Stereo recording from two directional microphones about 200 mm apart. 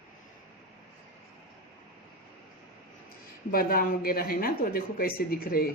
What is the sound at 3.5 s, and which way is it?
Speech, 50° left (ahead or behind).